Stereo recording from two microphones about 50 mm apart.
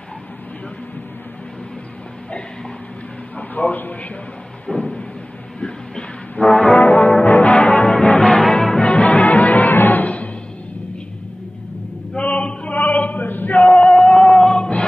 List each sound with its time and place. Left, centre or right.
3.3 s a man's voice: left
4.6 s a sound: centre
5.6 s music: centre
6.8 s brass instrument: left
7.2 s music: left
8.4 s music: centre
8.8 s music: left
12.2 s chant: left
12.7 s male singing: left
13.6 s music: left